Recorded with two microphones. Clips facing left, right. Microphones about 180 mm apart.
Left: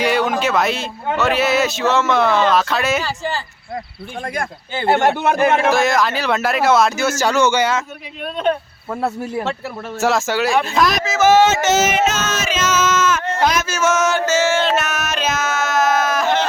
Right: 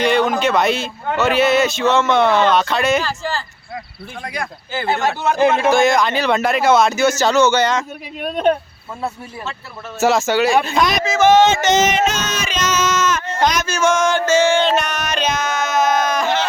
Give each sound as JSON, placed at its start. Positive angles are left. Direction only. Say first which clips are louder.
{"t": 0.0, "sound": "speech", "louder": "right 2 dB", "side_deg": 5}
{"t": 5.0, "sound": "speech", "louder": "left 3 dB", "side_deg": 60}
{"t": 5.7, "sound": "speech", "louder": "right 2 dB", "side_deg": 0}
{"t": 8.9, "sound": "speech", "louder": "left 5 dB", "side_deg": 65}
{"t": 10.0, "sound": "speech", "louder": "right 3 dB", "side_deg": 0}